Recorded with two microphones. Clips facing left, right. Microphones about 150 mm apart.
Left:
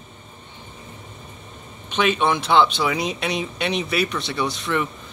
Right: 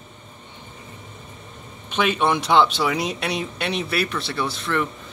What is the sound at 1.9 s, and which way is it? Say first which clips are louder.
Speech: left 1 dB; 5° right (ahead or behind).